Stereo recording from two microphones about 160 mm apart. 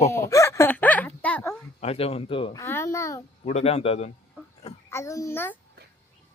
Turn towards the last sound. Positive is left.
turn(degrees=15)  # may be behind; listen again after turning